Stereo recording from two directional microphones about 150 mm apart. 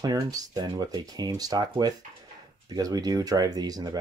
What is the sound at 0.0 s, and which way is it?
Speech, 25° right (ahead or behind).